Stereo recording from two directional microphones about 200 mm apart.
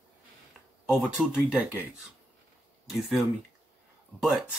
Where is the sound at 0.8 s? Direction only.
5° right (ahead or behind).